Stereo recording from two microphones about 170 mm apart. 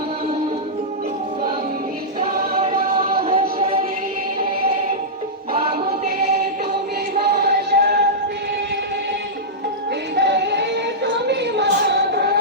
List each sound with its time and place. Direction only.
2.2 s choir: 35° right (ahead or behind)
3.1 s music: 35° right (ahead or behind)
5.5 s music: 35° right (ahead or behind)
7.2 s a sound: 70° right (ahead or behind)
10.2 s music: 90° right; by 12.4 s 70° right (ahead or behind)